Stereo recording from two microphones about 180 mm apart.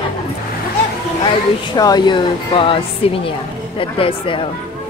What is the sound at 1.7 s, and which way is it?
Speech, 20° left (ahead or behind).